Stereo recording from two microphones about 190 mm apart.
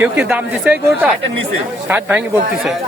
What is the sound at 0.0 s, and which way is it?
Speech, 5° right (ahead or behind).